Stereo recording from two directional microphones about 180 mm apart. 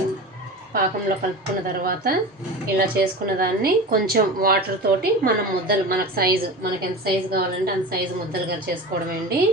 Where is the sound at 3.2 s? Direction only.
55° right (ahead or behind).